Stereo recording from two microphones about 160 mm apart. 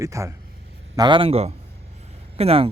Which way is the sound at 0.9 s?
30° right (ahead or behind).